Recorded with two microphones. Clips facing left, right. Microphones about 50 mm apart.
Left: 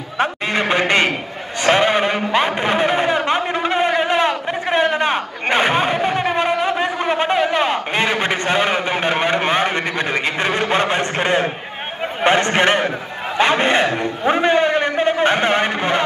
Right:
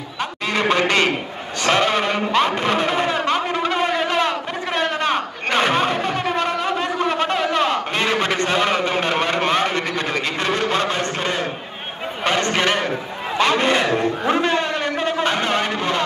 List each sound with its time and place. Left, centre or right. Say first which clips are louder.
0.2 s a man's voice: left 3 dB; centre
3.3 s a sound: left 1 dB; left
12.2 s a man's voice: left 4 dB; left